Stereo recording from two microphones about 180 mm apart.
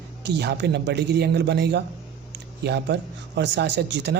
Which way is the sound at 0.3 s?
70° right (ahead or behind).